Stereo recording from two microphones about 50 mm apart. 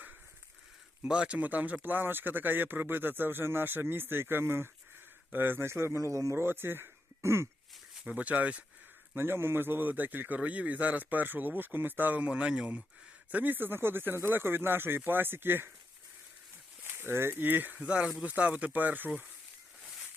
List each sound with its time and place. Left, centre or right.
1.0 s speech: centre
1.4 s speech: right
6.3 s speech: right
7.2 s throat clearing: right
8.0 s speech: right
9.1 s speech: right
9.9 s speech: right
13.3 s speech: right
16.8 s speech: right
17.7 s speech: right